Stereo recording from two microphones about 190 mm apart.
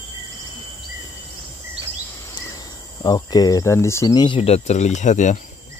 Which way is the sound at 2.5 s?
20° left (ahead or behind).